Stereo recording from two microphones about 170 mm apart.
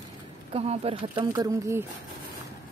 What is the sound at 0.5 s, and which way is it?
Speech, 35° right (ahead or behind).